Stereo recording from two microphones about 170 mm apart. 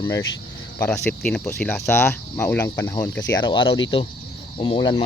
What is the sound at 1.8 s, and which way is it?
Speech, 15° left (ahead or behind).